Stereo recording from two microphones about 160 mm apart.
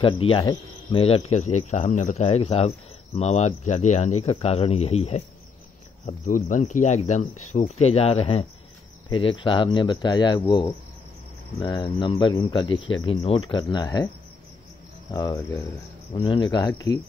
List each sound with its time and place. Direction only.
0.0 s speech: 30° left (ahead or behind)
6.0 s speech: 55° left (ahead or behind); by 10.7 s 30° left (ahead or behind)
11.8 s speech: 30° left (ahead or behind)